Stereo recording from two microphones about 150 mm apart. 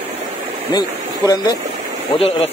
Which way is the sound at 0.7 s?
25° left (ahead or behind).